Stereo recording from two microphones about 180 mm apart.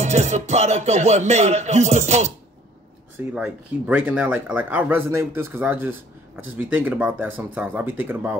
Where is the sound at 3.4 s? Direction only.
5° right (ahead or behind).